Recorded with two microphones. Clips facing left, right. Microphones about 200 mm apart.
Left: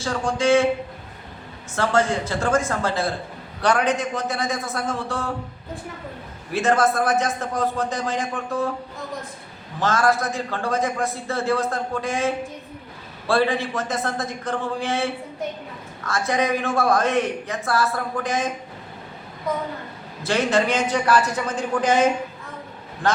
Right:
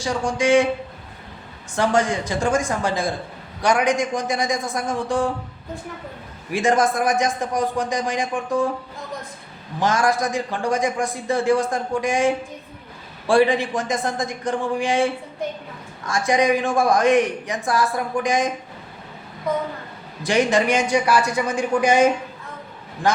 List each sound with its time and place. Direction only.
0.0 s a man's voice: 15° right (ahead or behind)
1.7 s a man's voice: 15° right (ahead or behind)
6.5 s a man's voice: 15° right (ahead or behind)
9.8 s a man's voice: 15° right (ahead or behind)
20.2 s a man's voice: 15° right (ahead or behind)
23.0 s a man's voice: 10° right (ahead or behind)